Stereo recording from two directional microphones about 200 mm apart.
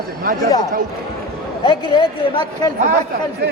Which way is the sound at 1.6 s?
25° left (ahead or behind).